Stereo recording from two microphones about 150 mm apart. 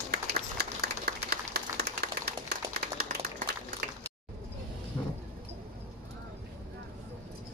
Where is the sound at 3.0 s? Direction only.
65° right (ahead or behind).